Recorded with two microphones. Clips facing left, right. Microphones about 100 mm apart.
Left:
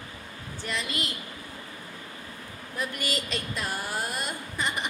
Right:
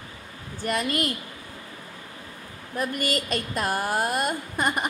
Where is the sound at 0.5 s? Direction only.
50° right (ahead or behind).